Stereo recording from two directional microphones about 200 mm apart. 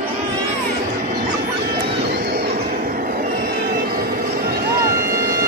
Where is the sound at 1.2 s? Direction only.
50° right (ahead or behind).